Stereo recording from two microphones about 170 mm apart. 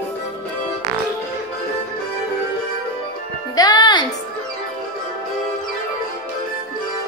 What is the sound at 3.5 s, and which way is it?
Music, 25° left (ahead or behind).